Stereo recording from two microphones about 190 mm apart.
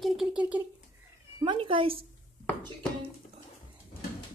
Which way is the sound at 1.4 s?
25° right (ahead or behind).